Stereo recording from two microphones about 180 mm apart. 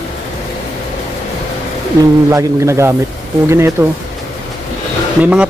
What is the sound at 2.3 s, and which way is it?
Speech, 15° right (ahead or behind).